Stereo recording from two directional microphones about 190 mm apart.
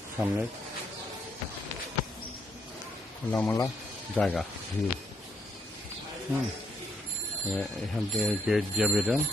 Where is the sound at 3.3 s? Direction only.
10° left (ahead or behind).